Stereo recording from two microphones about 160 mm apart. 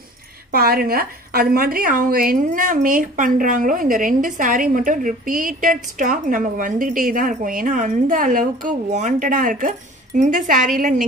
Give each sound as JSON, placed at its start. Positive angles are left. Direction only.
{"t": 0.5, "sound": "a woman's voice", "side_deg": -70}